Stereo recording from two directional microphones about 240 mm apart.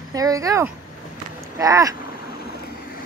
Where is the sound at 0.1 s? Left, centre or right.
Centre.